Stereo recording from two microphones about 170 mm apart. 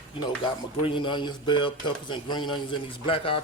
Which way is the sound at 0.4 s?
30° left (ahead or behind).